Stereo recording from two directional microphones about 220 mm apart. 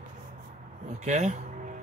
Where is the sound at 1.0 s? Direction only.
30° right (ahead or behind).